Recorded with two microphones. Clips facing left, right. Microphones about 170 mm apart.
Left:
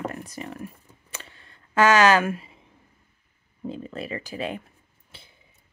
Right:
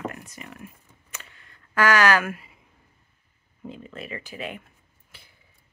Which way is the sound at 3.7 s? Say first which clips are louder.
Left 4 dB; 35° left (ahead or behind).